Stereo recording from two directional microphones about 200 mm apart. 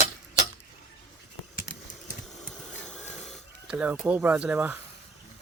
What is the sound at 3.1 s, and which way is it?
Speech, centre (ahead or behind).